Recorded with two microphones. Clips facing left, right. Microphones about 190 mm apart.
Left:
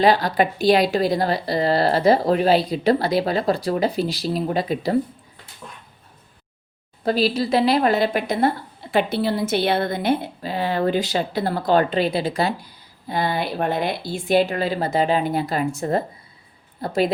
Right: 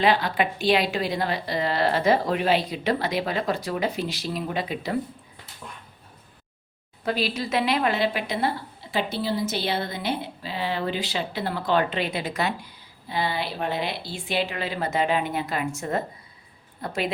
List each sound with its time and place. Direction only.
0.0 s a woman's voice: 40° left (ahead or behind)
7.0 s speech: 35° left (ahead or behind)
13.1 s a woman's voice: 50° left (ahead or behind)